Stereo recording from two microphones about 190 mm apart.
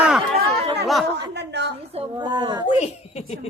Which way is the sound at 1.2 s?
65° right (ahead or behind).